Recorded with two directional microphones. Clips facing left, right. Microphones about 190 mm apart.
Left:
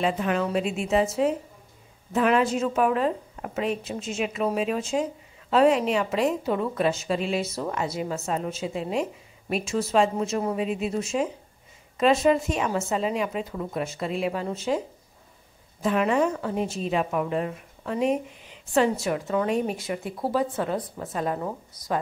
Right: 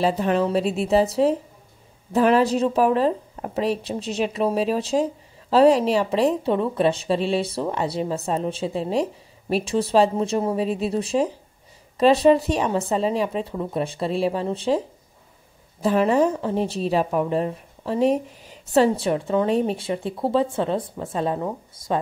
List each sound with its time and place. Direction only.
0.0 s a woman's voice: 35° right (ahead or behind)
15.8 s a woman's voice: 35° right (ahead or behind)